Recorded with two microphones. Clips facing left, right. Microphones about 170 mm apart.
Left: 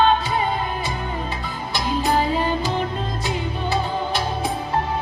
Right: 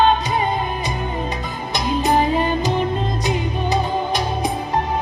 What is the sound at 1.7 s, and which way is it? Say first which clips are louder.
Music: right 3 dB; 20° right (ahead or behind).